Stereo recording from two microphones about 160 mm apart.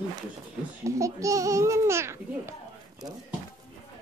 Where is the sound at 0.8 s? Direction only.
20° right (ahead or behind).